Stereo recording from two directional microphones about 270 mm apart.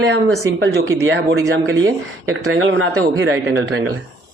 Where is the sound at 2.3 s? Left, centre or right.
Right.